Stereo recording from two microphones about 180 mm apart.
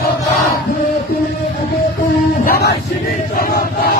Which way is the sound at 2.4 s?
60° left (ahead or behind).